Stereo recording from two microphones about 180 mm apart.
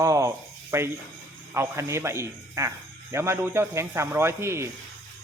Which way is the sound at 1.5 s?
15° right (ahead or behind).